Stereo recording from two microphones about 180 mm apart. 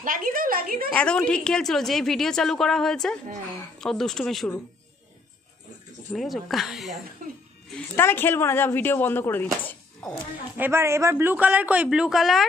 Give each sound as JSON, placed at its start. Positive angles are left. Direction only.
{"t": 0.0, "sound": "a sound", "side_deg": -50}
{"t": 0.9, "sound": "a woman's voice", "side_deg": 5}
{"t": 6.1, "sound": "a woman's voice", "side_deg": 0}
{"t": 7.7, "sound": "speech", "side_deg": 10}
{"t": 10.6, "sound": "a man's voice", "side_deg": -15}